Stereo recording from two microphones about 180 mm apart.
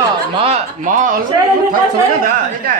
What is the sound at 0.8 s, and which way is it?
Speech, 45° right (ahead or behind).